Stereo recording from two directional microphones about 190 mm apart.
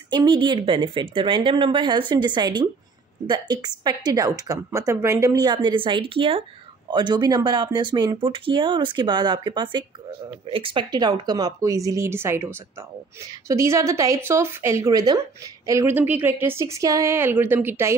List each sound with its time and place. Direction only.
0.1 s a woman's voice: 25° right (ahead or behind)